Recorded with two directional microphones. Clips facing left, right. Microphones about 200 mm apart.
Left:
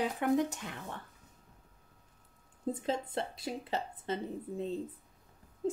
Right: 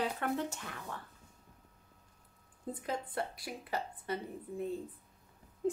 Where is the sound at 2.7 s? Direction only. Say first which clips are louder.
Left 3 dB; 25° left (ahead or behind).